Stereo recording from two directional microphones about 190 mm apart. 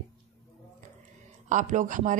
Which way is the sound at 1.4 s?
40° right (ahead or behind).